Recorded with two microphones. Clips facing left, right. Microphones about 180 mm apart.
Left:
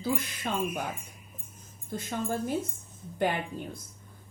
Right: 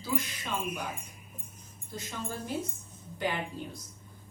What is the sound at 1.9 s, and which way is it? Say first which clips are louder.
Speech: left 6 dB; 50° left (ahead or behind).